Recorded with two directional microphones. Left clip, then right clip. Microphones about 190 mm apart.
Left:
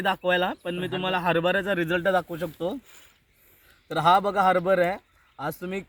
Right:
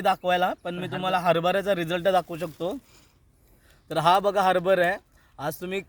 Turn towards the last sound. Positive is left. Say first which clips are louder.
# right 1 dB
turn(degrees=-30)  # may be behind; listen again after turning